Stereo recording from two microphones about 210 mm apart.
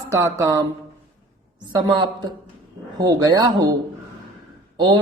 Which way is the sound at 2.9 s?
15° right (ahead or behind).